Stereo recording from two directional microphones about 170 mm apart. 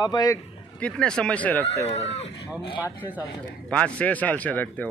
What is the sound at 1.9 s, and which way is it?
Speech, 40° left (ahead or behind).